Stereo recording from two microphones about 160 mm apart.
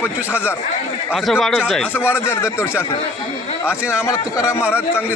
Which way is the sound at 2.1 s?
15° left (ahead or behind).